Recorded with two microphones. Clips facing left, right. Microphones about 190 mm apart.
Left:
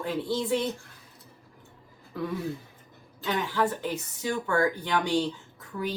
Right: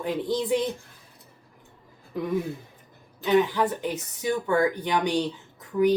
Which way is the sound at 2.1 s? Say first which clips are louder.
Right 4 dB; 20° right (ahead or behind).